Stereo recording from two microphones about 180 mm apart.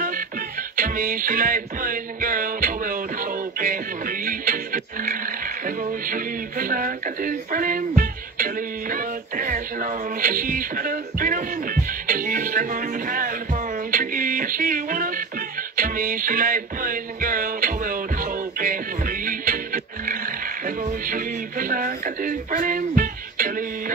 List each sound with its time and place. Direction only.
0.7 s speech: 50° right (ahead or behind)
3.5 s music: 50° right (ahead or behind)
5.9 s speech: 50° right (ahead or behind)
13.8 s music: 50° right (ahead or behind)
20.6 s speech: 50° right (ahead or behind)